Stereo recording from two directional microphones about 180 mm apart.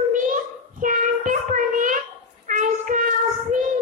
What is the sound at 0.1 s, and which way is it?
Child singing, 45° right (ahead or behind).